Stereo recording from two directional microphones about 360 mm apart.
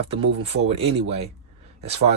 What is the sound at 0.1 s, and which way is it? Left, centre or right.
Speech, centre.